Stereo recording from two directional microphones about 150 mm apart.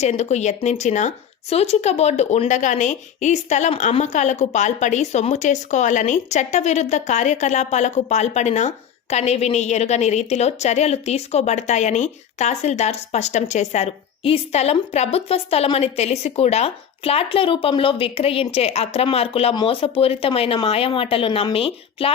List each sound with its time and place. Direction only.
0.0 s speech: 50° left (ahead or behind)